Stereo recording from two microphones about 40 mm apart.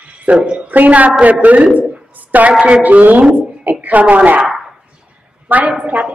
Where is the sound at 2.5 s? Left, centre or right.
Right.